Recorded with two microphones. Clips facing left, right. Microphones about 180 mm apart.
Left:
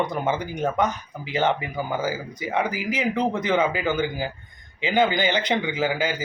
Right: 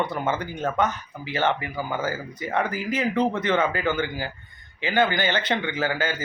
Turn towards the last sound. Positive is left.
turn(degrees=15)  # may be behind; listen again after turning